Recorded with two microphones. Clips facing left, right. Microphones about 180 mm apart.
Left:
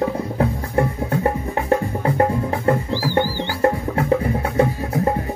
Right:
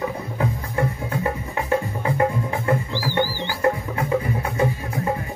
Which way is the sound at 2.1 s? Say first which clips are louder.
Left 2 dB; 40° left (ahead or behind).